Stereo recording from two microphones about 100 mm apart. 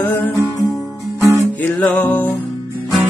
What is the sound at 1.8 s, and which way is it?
Music, 15° left (ahead or behind).